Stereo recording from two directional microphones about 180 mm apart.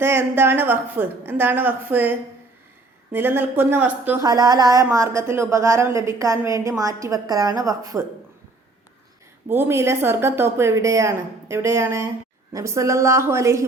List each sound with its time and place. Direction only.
0.0 s a woman's voice: 15° right (ahead or behind)
4.3 s a woman's voice: 20° right (ahead or behind)
9.5 s a woman's voice: 10° right (ahead or behind)